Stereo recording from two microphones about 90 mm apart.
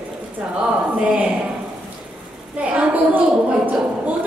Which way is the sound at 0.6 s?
15° right (ahead or behind).